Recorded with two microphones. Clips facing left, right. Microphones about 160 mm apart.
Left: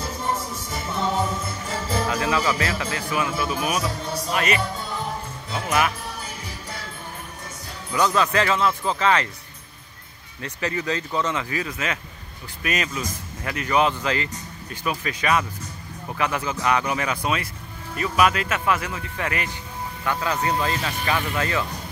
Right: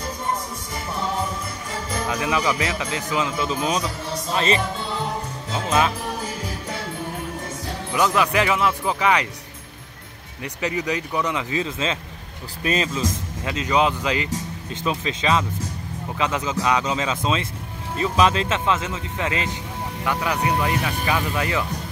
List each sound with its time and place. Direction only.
2.0 s a man's voice: 15° right (ahead or behind)
7.9 s speech: 15° right (ahead or behind)
10.4 s a man's voice: 15° right (ahead or behind)